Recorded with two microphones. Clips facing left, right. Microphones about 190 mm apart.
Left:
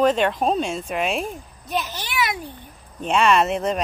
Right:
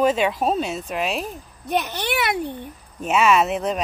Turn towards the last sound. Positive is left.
turn(degrees=0)  # may be behind; listen again after turning